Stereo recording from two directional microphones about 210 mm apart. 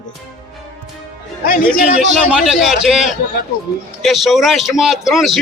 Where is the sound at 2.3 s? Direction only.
5° right (ahead or behind).